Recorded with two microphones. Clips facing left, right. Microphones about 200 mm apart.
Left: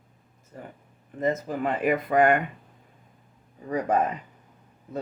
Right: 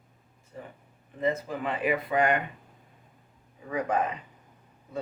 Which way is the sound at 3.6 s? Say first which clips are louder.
Left 4 dB; 40° left (ahead or behind).